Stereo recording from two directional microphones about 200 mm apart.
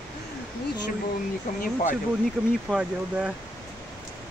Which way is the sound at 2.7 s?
5° right (ahead or behind).